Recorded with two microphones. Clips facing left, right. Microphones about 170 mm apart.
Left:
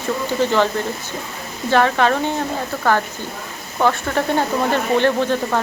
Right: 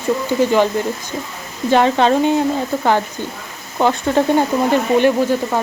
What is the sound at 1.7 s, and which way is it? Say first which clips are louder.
Speech: right 3 dB; 20° right (ahead or behind).